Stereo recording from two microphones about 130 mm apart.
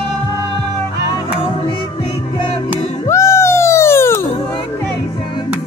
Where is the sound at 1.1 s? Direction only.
40° left (ahead or behind).